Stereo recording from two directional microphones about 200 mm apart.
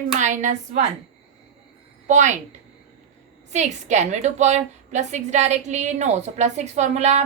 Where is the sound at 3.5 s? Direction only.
35° right (ahead or behind).